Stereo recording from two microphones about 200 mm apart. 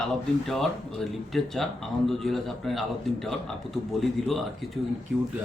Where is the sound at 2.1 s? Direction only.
Centre (ahead or behind).